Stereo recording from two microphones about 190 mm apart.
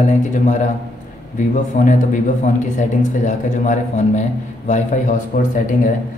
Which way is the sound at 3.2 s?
40° left (ahead or behind).